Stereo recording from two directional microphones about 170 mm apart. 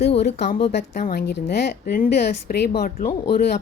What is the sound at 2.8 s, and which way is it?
Speech, 55° left (ahead or behind).